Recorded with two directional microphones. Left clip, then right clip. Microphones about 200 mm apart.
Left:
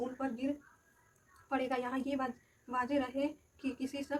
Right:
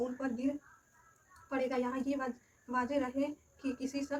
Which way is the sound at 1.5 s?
25° left (ahead or behind).